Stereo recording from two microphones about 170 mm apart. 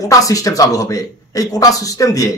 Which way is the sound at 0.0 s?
20° left (ahead or behind).